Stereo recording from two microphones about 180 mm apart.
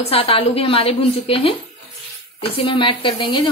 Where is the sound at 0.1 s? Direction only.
30° left (ahead or behind).